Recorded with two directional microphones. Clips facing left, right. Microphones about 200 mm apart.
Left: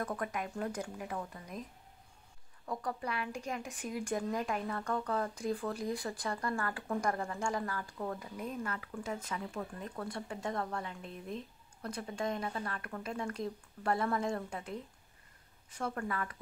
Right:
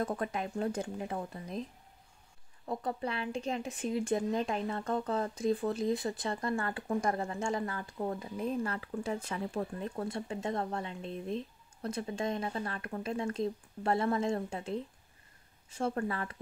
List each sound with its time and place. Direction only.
0.0 s speech: 25° right (ahead or behind)
2.6 s speech: 25° right (ahead or behind)